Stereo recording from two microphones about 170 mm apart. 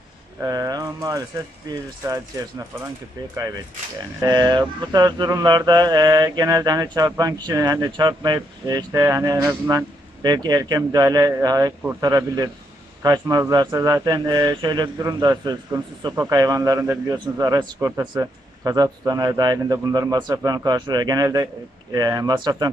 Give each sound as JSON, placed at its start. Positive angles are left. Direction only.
{"t": 0.4, "sound": "mantra", "side_deg": -20}
{"t": 4.2, "sound": "mantra", "side_deg": -25}
{"t": 17.7, "sound": "speech", "side_deg": -15}
{"t": 18.1, "sound": "mantra", "side_deg": -20}